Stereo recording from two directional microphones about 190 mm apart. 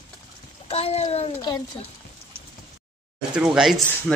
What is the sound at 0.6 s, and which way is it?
Speech, 30° left (ahead or behind).